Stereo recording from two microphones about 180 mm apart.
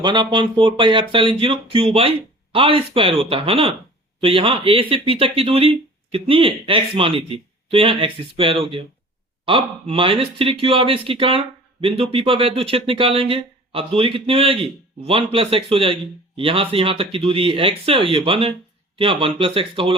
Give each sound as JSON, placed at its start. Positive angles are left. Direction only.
{"t": 0.0, "sound": "speech", "side_deg": -25}